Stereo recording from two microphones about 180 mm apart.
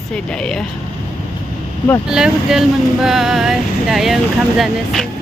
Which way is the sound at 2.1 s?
5° right (ahead or behind).